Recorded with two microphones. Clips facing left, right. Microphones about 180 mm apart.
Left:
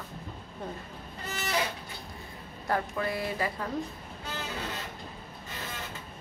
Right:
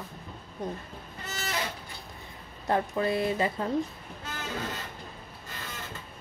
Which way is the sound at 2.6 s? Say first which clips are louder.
Right 3 dB; 25° right (ahead or behind).